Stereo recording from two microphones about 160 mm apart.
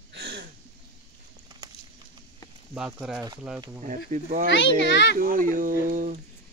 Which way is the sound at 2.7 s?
5° right (ahead or behind).